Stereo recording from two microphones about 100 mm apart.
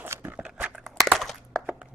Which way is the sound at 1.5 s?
10° right (ahead or behind).